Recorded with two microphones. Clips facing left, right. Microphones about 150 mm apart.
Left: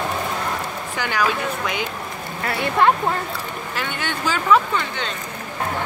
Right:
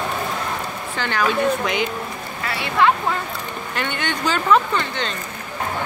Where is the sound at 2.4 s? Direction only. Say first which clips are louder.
Left 1 dB; 50° left (ahead or behind).